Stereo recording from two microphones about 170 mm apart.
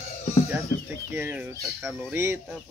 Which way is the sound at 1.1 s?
10° right (ahead or behind).